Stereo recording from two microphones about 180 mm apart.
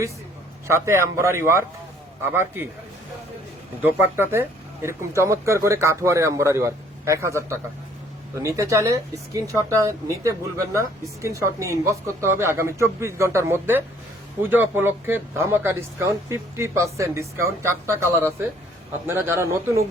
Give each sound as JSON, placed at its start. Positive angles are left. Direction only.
{"t": 0.7, "sound": "speech", "side_deg": -15}
{"t": 3.8, "sound": "speech", "side_deg": -10}